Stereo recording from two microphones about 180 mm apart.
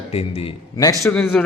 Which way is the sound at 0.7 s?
20° left (ahead or behind).